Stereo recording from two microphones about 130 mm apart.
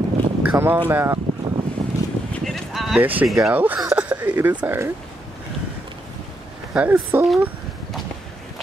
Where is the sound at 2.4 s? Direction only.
Centre (ahead or behind).